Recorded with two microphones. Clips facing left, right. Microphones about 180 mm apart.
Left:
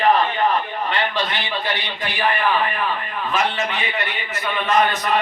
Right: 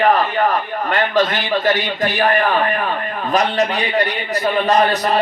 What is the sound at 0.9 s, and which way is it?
A man's voice, 45° right (ahead or behind).